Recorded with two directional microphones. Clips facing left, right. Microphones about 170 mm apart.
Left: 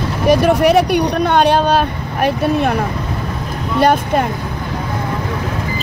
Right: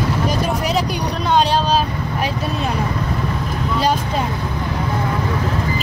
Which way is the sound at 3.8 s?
60° left (ahead or behind).